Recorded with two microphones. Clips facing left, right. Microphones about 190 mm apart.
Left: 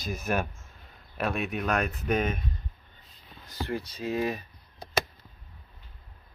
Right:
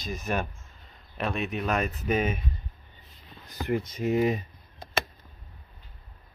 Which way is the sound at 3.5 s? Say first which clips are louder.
Right 4 dB; 20° right (ahead or behind).